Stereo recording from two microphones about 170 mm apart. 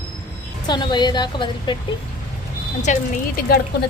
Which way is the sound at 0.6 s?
25° left (ahead or behind).